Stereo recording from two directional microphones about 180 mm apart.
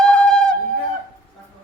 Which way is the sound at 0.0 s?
5° left (ahead or behind).